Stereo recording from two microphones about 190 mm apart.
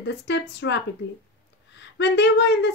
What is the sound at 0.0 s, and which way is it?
A woman's voice, 65° left (ahead or behind).